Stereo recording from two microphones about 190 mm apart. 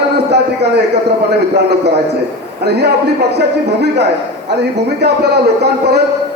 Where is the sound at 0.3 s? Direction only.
60° right (ahead or behind).